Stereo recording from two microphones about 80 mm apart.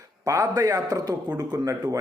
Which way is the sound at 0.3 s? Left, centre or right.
Right.